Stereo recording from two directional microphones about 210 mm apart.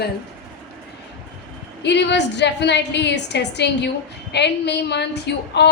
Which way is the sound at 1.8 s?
55° left (ahead or behind).